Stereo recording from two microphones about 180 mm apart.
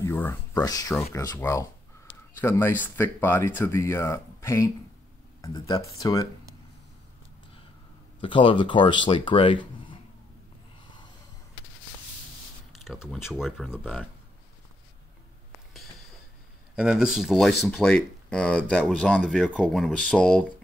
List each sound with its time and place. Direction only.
0.0 s speech: 15° left (ahead or behind)
8.2 s speech: 30° left (ahead or behind)
12.8 s speech: centre (ahead or behind)
16.7 s speech: 5° right (ahead or behind)